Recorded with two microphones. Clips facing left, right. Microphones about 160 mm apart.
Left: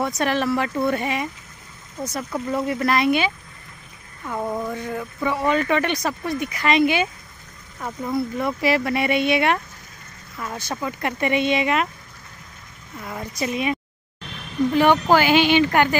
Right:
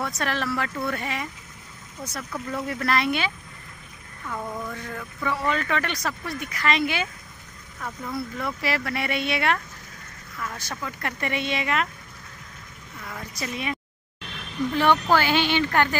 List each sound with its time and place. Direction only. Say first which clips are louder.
0.0 s speech: left 6 dB; 15° left (ahead or behind)
4.3 s speech: left 6 dB; 30° left (ahead or behind)
4.7 s speech: left 7 dB; 20° left (ahead or behind)
13.0 s speech: left 7 dB; 20° left (ahead or behind)
14.8 s speech: left 4 dB; 15° left (ahead or behind)